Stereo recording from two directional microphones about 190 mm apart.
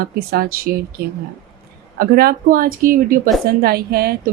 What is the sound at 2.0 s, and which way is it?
Speech, 50° right (ahead or behind).